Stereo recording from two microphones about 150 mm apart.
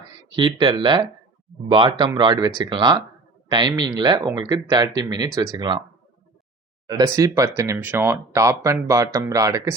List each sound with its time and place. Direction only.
0.3 s speech: 30° right (ahead or behind)
6.8 s speech: 25° right (ahead or behind)